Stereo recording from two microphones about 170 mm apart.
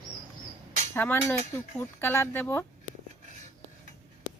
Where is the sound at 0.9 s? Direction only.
15° left (ahead or behind).